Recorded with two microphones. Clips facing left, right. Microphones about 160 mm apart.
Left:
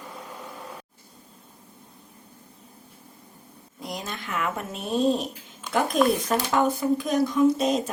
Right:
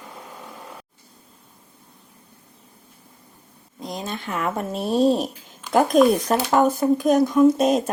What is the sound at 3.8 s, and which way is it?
Speech, 25° right (ahead or behind).